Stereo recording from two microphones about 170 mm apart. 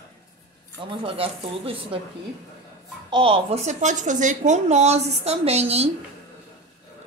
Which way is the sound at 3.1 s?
30° right (ahead or behind).